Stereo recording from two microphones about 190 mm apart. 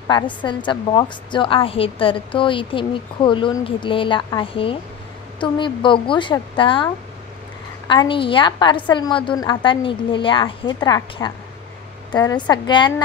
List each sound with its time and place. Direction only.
0.1 s a woman's voice: 25° left (ahead or behind)
7.9 s a woman's voice: 25° left (ahead or behind)